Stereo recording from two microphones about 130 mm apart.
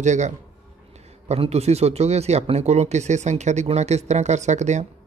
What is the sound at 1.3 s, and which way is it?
Speech, 55° right (ahead or behind).